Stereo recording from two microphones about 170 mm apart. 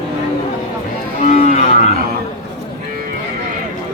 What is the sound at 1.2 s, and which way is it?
Cattle, 40° left (ahead or behind).